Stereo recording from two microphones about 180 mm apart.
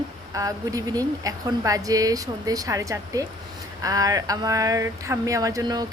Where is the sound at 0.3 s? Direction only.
20° right (ahead or behind).